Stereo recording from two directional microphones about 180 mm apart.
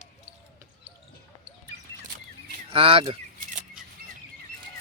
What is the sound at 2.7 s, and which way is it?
Speech, 30° right (ahead or behind).